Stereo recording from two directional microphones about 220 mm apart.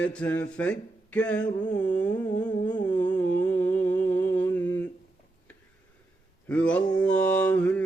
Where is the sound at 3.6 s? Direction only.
10° left (ahead or behind).